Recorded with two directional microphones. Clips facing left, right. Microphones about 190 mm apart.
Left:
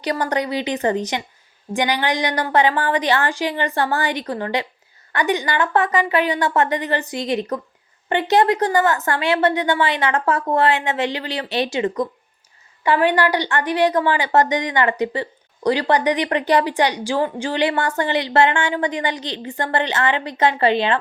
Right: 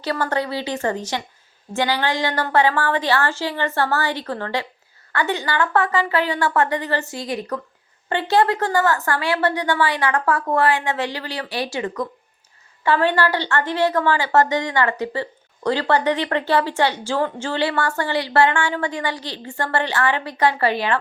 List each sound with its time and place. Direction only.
0.0 s a woman's voice: 15° left (ahead or behind)